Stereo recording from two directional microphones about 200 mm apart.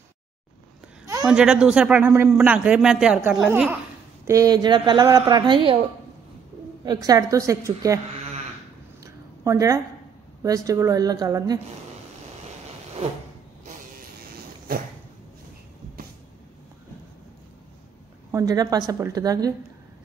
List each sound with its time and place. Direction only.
1.2 s speech: 5° right (ahead or behind)
4.3 s a woman's voice: 20° right (ahead or behind)
6.8 s a woman's voice: 20° right (ahead or behind)
9.0 s a sound: 15° right (ahead or behind)
10.4 s a woman's voice: 15° right (ahead or behind)
14.7 s a sound: 45° right (ahead or behind)
18.3 s a woman's voice: 20° right (ahead or behind)